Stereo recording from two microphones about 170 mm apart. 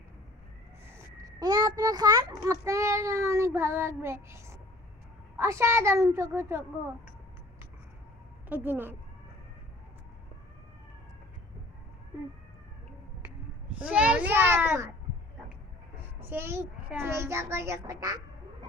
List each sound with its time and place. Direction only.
1.2 s a child's voice: 25° right (ahead or behind)
8.4 s a child's voice: 10° right (ahead or behind)
13.7 s a child's voice: 5° right (ahead or behind)
16.2 s a child's voice: 15° right (ahead or behind)